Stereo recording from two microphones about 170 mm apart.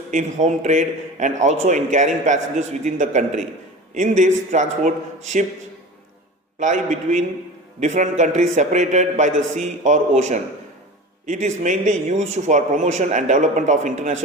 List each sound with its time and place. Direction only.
0.1 s a man's voice: 45° right (ahead or behind)
6.6 s a man's voice: 45° right (ahead or behind)